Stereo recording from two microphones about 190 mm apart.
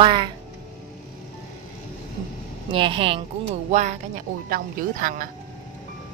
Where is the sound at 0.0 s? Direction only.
25° right (ahead or behind).